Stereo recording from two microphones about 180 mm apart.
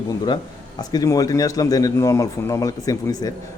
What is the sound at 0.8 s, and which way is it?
A man's voice, 20° left (ahead or behind).